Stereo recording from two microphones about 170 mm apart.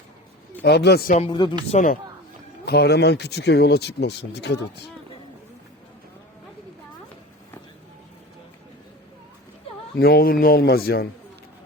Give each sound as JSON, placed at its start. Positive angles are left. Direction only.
{"t": 0.6, "sound": "speech", "side_deg": 75}
{"t": 1.7, "sound": "speech", "side_deg": 50}
{"t": 2.6, "sound": "speech", "side_deg": 75}
{"t": 9.9, "sound": "speech", "side_deg": 65}